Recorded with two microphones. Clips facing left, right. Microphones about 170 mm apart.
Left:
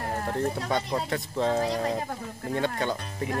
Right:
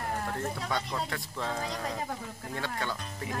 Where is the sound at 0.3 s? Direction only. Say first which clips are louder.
Left 6 dB; 20° left (ahead or behind).